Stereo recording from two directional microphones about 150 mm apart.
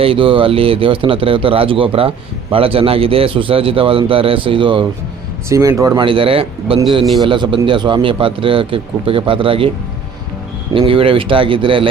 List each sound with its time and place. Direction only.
0.0 s speech: 35° right (ahead or behind)
5.5 s speech: 20° right (ahead or behind); by 9.6 s 35° right (ahead or behind)
10.7 s speech: 35° right (ahead or behind)